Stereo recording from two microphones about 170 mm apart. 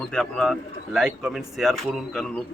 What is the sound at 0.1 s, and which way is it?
A man's voice, 5° left (ahead or behind).